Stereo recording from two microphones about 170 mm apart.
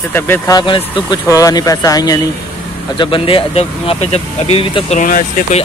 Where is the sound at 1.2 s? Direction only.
20° left (ahead or behind).